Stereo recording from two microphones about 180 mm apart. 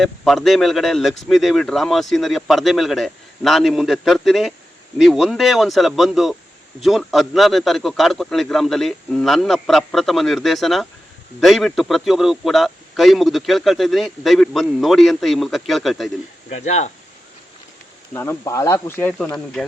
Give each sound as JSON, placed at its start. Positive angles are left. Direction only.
{"t": 0.0, "sound": "a man's voice", "side_deg": 0}
{"t": 16.5, "sound": "speech", "side_deg": 40}
{"t": 18.1, "sound": "speech", "side_deg": 15}